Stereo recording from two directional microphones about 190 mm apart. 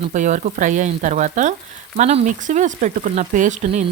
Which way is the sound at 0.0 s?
40° right (ahead or behind).